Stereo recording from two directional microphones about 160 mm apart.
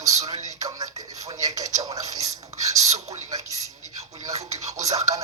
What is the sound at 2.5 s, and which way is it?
Whispering, 20° right (ahead or behind).